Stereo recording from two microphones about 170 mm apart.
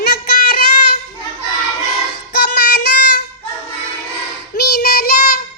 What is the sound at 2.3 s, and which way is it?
Child singing, 70° left (ahead or behind).